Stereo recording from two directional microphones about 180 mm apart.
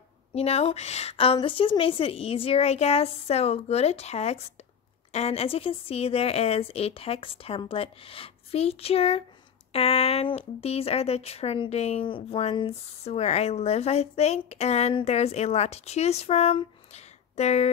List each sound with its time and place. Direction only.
0.3 s speech: 35° left (ahead or behind)